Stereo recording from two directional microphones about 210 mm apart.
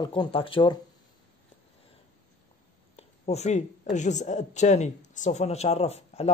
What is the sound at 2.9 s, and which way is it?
Speech, 30° left (ahead or behind).